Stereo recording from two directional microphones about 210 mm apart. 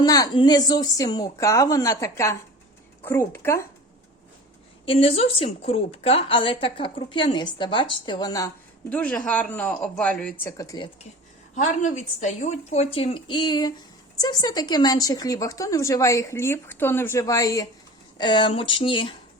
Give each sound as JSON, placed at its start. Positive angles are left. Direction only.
{"t": 0.0, "sound": "speech", "side_deg": 20}
{"t": 4.9, "sound": "a woman's voice", "side_deg": 30}
{"t": 8.9, "sound": "speech", "side_deg": 5}
{"t": 11.5, "sound": "a woman's voice", "side_deg": 35}